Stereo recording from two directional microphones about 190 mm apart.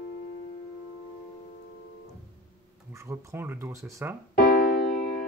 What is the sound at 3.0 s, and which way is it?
Speech, 10° right (ahead or behind).